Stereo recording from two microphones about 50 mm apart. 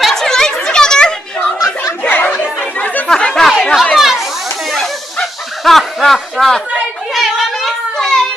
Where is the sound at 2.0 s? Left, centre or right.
Left.